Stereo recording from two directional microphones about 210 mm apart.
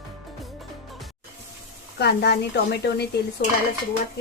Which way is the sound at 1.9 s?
50° left (ahead or behind).